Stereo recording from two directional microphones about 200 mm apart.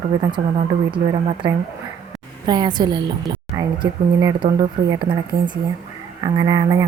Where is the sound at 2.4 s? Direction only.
20° right (ahead or behind).